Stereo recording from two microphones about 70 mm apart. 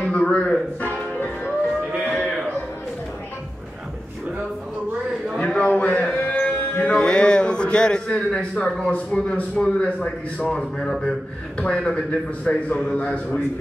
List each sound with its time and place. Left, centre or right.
0.0 s a man's voice: centre
5.4 s a sound: centre
6.2 s music: left; by 8.8 s centre
8.9 s a man's voice: centre